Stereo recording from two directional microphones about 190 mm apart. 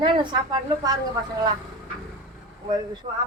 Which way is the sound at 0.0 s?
25° right (ahead or behind).